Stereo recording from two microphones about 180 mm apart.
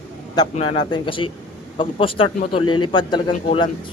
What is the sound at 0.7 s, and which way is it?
Speech, 25° left (ahead or behind).